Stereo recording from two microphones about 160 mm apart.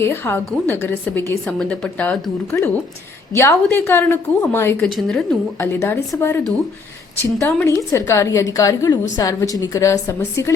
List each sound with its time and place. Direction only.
0.0 s a woman's voice: 15° left (ahead or behind)
4.9 s a woman's voice: centre (ahead or behind)
5.5 s a woman's voice: 15° left (ahead or behind)